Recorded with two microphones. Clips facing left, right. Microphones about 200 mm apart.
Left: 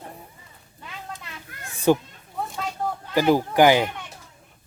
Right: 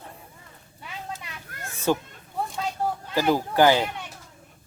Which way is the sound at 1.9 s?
15° left (ahead or behind).